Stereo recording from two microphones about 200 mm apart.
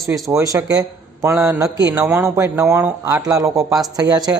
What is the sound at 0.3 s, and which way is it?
A man's voice, 15° right (ahead or behind).